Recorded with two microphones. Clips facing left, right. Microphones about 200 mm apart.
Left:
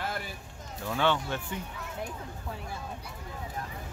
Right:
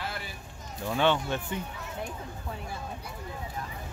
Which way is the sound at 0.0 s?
45° left (ahead or behind).